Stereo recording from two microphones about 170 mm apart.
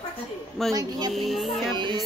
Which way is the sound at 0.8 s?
25° right (ahead or behind).